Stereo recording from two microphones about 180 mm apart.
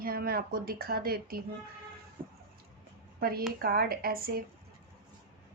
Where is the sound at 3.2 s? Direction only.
55° right (ahead or behind).